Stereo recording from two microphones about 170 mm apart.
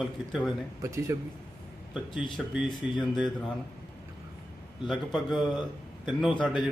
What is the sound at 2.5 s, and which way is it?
Speech, 5° right (ahead or behind).